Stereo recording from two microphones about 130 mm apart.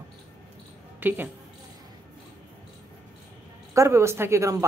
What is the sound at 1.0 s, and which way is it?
Speech, 15° right (ahead or behind).